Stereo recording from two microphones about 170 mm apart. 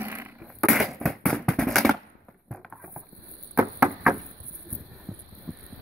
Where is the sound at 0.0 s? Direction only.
15° right (ahead or behind).